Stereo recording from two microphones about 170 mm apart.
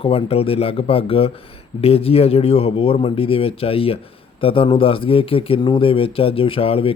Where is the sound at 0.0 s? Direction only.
35° left (ahead or behind).